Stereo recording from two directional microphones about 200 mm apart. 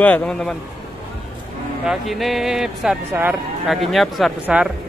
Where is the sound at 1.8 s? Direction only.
Centre (ahead or behind).